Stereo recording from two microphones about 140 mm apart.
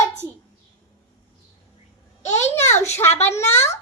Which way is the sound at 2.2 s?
55° left (ahead or behind).